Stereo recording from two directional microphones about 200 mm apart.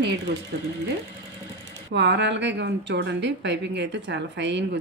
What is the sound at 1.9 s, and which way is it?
A woman's voice, 60° right (ahead or behind).